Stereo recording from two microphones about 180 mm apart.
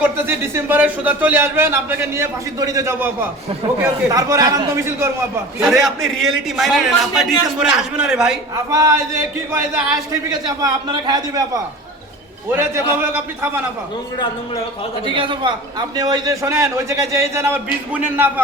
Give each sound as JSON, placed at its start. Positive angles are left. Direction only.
{"t": 0.0, "sound": "speech", "side_deg": -10}
{"t": 5.7, "sound": "a man's voice", "side_deg": 0}
{"t": 8.7, "sound": "a man's voice", "side_deg": -20}
{"t": 15.0, "sound": "a man's voice", "side_deg": -25}